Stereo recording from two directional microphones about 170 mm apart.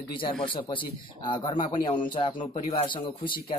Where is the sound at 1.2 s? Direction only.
30° left (ahead or behind).